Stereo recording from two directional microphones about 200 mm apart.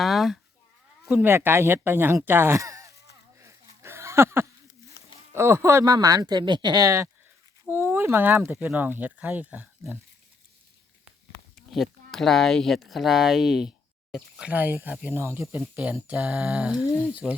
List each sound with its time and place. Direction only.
0.0 s cat: centre (ahead or behind)
1.0 s speech: 5° right (ahead or behind)
3.4 s a sound: 15° right (ahead or behind)
5.0 s a sound: 55° left (ahead or behind)
5.3 s speech: 10° right (ahead or behind)
11.5 s speech: centre (ahead or behind)